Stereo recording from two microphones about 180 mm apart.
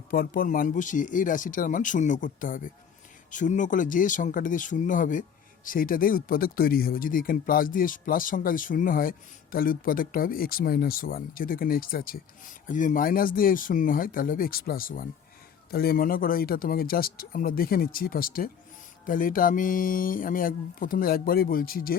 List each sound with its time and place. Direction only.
0.1 s speech: 50° left (ahead or behind)